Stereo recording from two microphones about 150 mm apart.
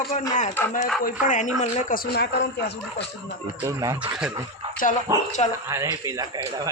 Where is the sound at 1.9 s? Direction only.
85° left.